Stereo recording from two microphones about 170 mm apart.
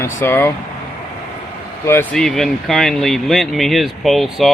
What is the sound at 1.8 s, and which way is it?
Speech, 15° left (ahead or behind).